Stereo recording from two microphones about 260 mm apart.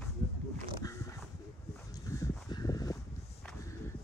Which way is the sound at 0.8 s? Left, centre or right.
Centre.